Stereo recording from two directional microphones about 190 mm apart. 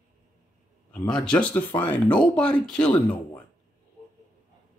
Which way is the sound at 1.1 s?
5° left (ahead or behind).